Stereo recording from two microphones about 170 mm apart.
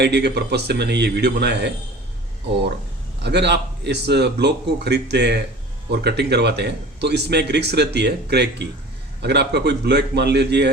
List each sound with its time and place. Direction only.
0.0 s speech: 80° right
3.2 s a man's voice: 85° right